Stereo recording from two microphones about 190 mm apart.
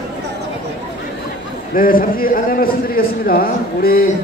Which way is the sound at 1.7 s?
50° left (ahead or behind).